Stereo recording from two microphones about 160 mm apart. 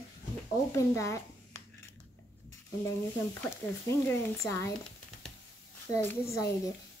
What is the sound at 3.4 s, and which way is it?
Speech, 15° left (ahead or behind).